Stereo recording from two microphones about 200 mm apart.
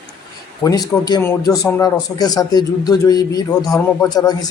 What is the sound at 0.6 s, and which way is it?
A man's voice, 20° left (ahead or behind).